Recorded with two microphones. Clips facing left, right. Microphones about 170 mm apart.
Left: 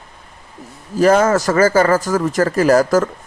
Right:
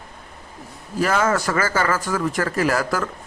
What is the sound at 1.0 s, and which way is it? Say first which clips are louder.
Speech: left 7 dB; 40° left (ahead or behind).